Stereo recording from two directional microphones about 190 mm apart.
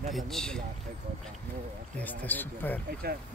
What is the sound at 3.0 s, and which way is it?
Speech, 55° right (ahead or behind).